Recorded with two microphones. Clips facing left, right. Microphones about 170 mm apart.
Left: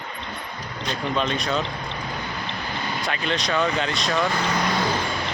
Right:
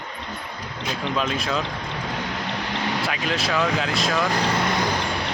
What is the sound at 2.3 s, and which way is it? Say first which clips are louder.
Vehicle: right 3 dB; 80° right.